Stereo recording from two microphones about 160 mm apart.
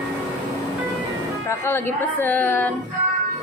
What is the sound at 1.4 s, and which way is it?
A woman's voice, 15° left (ahead or behind).